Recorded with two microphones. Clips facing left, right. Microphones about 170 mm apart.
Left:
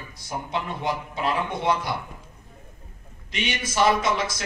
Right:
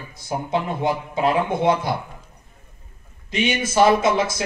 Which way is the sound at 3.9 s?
50° right (ahead or behind).